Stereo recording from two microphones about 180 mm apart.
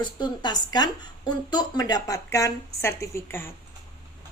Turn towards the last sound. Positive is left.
turn(degrees=15)  # may be behind; listen again after turning